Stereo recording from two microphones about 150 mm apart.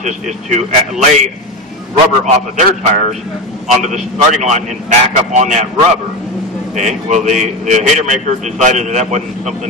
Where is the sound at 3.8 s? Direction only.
50° right (ahead or behind).